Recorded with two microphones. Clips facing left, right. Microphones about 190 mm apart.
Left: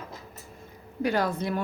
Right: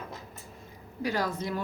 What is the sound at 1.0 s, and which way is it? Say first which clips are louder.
Speech: left 4 dB; 60° left (ahead or behind).